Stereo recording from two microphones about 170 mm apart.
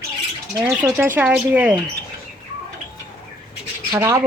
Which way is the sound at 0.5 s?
15° right (ahead or behind).